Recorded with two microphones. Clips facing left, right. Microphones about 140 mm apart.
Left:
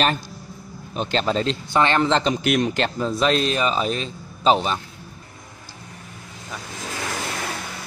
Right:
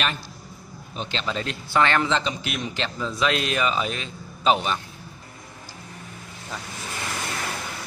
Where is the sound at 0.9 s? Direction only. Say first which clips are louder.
Left 7 dB; 45° left (ahead or behind).